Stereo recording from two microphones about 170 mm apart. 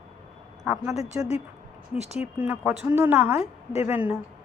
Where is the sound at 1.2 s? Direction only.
15° right (ahead or behind).